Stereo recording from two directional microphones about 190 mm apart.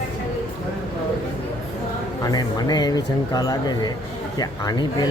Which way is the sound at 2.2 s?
20° left (ahead or behind).